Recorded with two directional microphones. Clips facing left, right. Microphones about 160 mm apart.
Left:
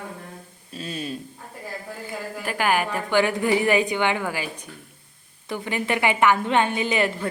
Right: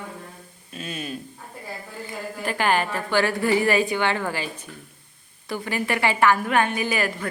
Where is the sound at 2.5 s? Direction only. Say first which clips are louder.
Even; 10° left (ahead or behind).